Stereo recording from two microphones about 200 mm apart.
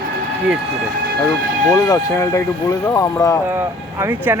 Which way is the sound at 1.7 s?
20° left (ahead or behind).